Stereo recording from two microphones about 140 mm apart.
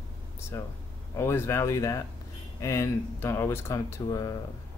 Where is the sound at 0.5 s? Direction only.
20° left (ahead or behind).